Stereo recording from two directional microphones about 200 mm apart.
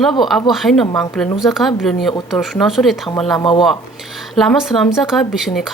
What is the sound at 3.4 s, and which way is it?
Speech, 25° left (ahead or behind).